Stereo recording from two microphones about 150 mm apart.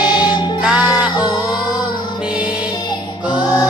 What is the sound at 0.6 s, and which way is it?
Music, 5° right (ahead or behind).